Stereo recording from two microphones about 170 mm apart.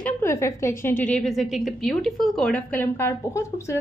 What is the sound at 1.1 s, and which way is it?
A woman's voice, centre (ahead or behind).